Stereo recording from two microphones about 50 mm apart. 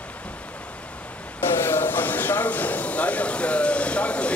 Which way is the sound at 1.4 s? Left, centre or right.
Left.